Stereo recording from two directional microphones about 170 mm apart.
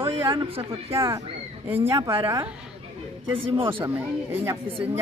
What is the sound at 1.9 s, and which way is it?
Speech, 30° right (ahead or behind).